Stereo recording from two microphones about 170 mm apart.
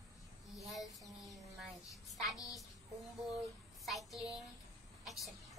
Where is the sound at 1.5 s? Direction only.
Centre (ahead or behind).